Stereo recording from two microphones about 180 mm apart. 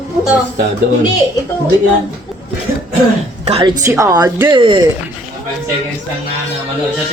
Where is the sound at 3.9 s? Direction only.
20° right (ahead or behind).